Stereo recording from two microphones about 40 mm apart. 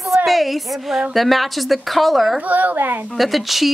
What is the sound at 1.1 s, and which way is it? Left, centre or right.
Speech, centre.